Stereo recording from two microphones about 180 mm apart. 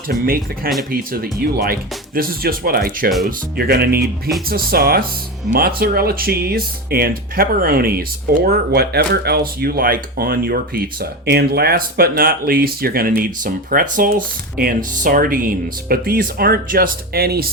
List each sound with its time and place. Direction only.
0.1 s speech: 55° right (ahead or behind)
4.0 s speech: centre (ahead or behind)
4.4 s speech: 55° right (ahead or behind)